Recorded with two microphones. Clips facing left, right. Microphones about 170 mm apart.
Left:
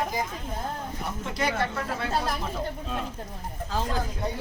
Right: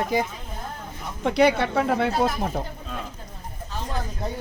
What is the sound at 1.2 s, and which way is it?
Speech, 65° right (ahead or behind).